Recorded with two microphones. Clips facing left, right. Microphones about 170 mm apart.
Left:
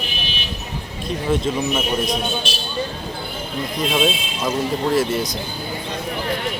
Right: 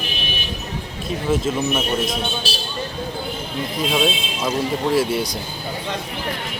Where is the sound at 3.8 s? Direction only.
Centre (ahead or behind).